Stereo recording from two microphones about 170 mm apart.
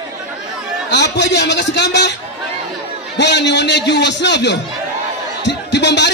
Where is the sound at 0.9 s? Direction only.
90° left.